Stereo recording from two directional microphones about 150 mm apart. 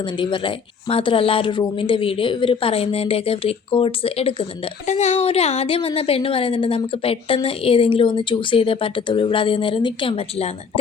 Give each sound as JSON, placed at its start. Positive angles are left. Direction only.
{"t": 0.0, "sound": "a woman's voice", "side_deg": 35}